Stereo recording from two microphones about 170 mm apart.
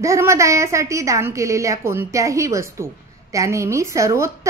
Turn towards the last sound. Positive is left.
turn(degrees=-15)  # may be behind; listen again after turning